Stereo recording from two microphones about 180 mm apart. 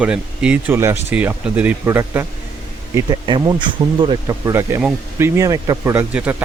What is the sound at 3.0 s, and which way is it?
Speech, 25° right (ahead or behind).